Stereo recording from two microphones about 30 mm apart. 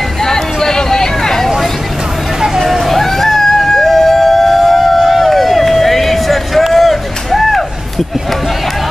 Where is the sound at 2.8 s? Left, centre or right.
Centre.